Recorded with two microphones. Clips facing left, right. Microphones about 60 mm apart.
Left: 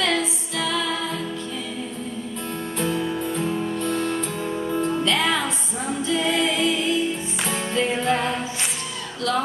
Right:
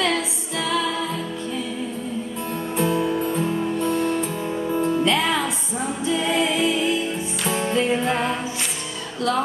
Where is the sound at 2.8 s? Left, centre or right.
Centre.